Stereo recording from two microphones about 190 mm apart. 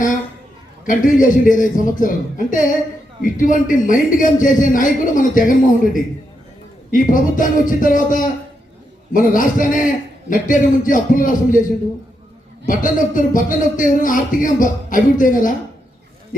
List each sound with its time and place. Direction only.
0.9 s speech: 45° left (ahead or behind)
12.6 s speech: 45° left (ahead or behind)